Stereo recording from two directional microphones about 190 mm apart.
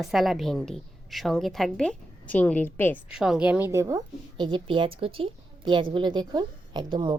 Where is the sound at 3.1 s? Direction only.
5° right (ahead or behind).